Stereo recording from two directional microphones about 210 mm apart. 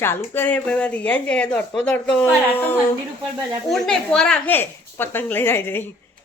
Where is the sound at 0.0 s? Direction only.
10° left (ahead or behind).